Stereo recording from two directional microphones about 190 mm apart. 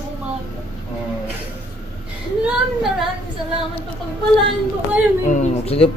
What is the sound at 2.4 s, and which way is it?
Child singing, centre (ahead or behind).